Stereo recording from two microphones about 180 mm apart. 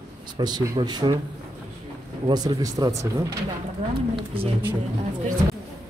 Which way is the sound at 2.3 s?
20° right (ahead or behind).